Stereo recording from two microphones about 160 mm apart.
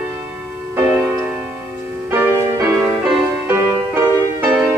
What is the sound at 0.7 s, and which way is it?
Music, 10° right (ahead or behind).